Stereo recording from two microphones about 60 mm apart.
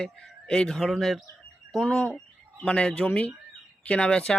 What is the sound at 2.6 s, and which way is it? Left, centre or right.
Speech, centre.